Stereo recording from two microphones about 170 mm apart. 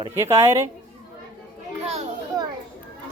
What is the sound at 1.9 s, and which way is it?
Children playing, 40° right (ahead or behind).